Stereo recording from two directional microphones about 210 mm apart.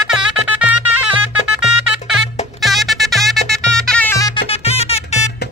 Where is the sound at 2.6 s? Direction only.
Centre (ahead or behind).